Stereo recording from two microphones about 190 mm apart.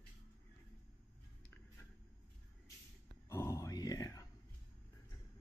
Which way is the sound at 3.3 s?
15° left (ahead or behind).